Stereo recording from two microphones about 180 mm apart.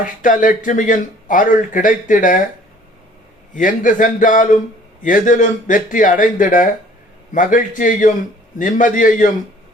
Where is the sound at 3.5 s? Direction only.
45° left (ahead or behind).